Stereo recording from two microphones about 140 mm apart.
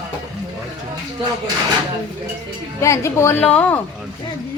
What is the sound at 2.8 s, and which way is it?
A woman's voice, 20° left (ahead or behind).